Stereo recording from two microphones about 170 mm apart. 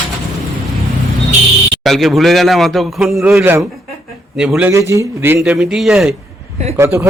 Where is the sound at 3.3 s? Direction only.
15° right (ahead or behind).